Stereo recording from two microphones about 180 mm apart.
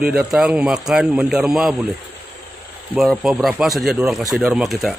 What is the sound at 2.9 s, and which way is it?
Speech, centre (ahead or behind).